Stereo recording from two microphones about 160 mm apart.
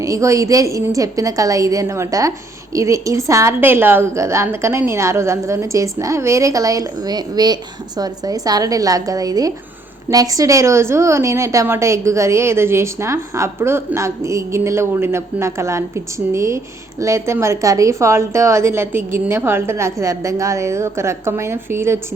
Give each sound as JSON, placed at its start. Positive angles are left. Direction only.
{"t": 0.0, "sound": "a woman's voice", "side_deg": -20}